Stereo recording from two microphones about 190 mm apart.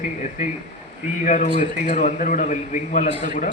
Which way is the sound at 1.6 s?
35° left (ahead or behind).